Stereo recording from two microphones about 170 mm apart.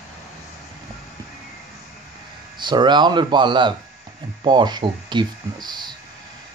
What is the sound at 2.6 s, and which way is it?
Speech, 25° right (ahead or behind).